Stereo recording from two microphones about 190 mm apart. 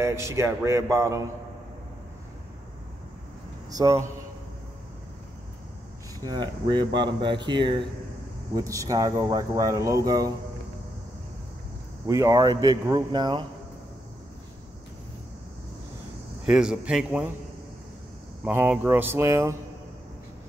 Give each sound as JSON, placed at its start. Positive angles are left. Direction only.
{"t": 0.0, "sound": "speech", "side_deg": -15}
{"t": 3.7, "sound": "speech", "side_deg": -15}
{"t": 6.2, "sound": "speech", "side_deg": -25}
{"t": 12.1, "sound": "speech", "side_deg": -20}
{"t": 16.4, "sound": "speech", "side_deg": -5}
{"t": 18.4, "sound": "speech", "side_deg": -10}